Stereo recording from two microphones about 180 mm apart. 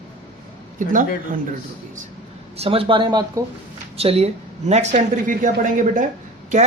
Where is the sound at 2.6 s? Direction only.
30° right (ahead or behind).